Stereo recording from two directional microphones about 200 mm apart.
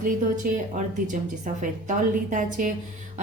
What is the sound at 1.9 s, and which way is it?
Speech, 40° right (ahead or behind).